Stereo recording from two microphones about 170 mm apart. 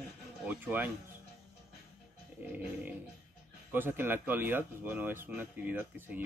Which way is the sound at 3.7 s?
10° right (ahead or behind).